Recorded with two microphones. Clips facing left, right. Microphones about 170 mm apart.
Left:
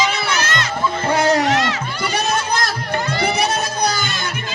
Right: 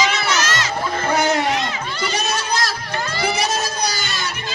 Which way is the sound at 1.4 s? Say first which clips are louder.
Left 3 dB; 85° left.